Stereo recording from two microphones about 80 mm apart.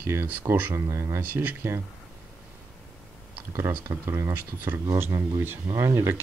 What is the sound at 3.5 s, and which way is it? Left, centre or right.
Speech, right.